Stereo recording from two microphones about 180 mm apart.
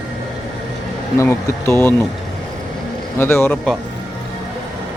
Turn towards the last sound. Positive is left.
turn(degrees=10)  # may be behind; listen again after turning